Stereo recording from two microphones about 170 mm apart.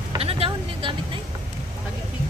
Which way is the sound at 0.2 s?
35° right (ahead or behind).